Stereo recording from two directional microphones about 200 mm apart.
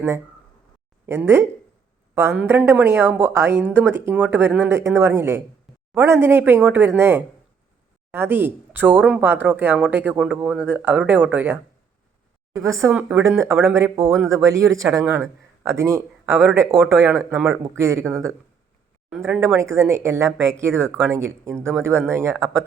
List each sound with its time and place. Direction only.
1.0 s speech: 10° right (ahead or behind)
19.1 s speech: 10° right (ahead or behind)